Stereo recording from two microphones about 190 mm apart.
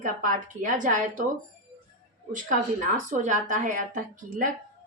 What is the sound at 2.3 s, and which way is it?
A woman's voice, 45° right (ahead or behind).